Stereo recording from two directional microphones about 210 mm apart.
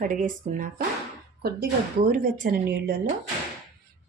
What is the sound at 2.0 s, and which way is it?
Speech, 40° right (ahead or behind).